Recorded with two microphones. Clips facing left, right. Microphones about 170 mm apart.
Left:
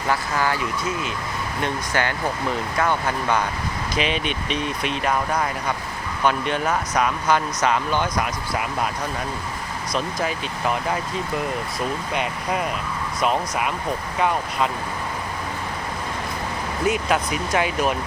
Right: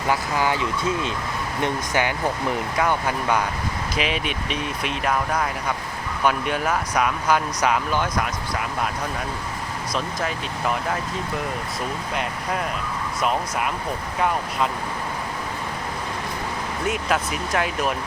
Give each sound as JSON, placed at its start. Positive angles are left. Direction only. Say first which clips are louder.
{"t": 0.1, "sound": "speech", "louder": "even", "side_deg": -15}
{"t": 1.6, "sound": "speech", "louder": "right 1 dB", "side_deg": -15}
{"t": 9.9, "sound": "speech", "louder": "left 2 dB", "side_deg": 0}
{"t": 12.1, "sound": "speech", "louder": "left 1 dB", "side_deg": 5}
{"t": 16.8, "sound": "speech", "louder": "left 3 dB", "side_deg": 0}